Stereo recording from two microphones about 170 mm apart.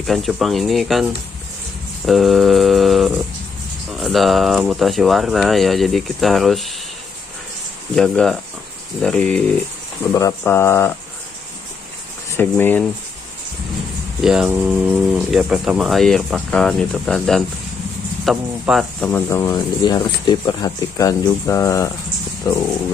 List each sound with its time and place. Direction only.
0.0 s speech: centre (ahead or behind)
2.0 s speech: centre (ahead or behind)
7.9 s speech: 5° left (ahead or behind)
10.1 s speech: 15° left (ahead or behind)
12.3 s speech: 10° left (ahead or behind)
14.2 s speech: 5° right (ahead or behind)
19.1 s speech: 15° left (ahead or behind)